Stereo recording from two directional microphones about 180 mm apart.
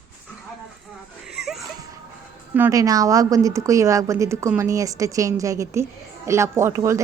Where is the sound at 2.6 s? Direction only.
20° right (ahead or behind).